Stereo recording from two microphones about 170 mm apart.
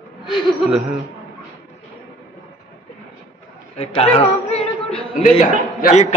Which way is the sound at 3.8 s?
35° left (ahead or behind).